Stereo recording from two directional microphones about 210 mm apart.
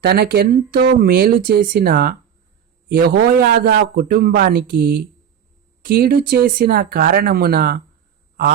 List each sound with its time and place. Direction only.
0.0 s speech: 50° right (ahead or behind)